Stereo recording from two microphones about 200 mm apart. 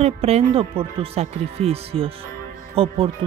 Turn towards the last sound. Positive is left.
turn(degrees=-30)  # may be behind; listen again after turning